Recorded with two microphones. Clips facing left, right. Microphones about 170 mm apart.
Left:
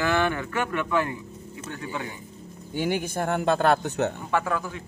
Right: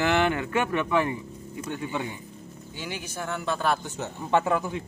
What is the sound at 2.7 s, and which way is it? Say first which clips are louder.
Speech: left 10 dB; 50° left (ahead or behind).